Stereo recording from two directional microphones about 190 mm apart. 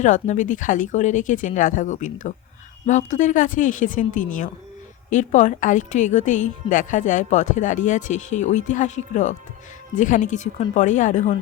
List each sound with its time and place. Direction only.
0.0 s a woman's voice: 40° left (ahead or behind)